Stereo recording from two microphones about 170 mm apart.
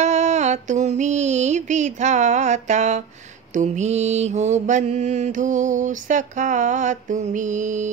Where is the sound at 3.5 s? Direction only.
45° right (ahead or behind).